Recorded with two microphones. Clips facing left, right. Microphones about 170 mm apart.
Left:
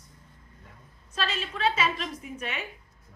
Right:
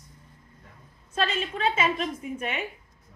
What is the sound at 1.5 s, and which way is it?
A woman's voice, 25° right (ahead or behind).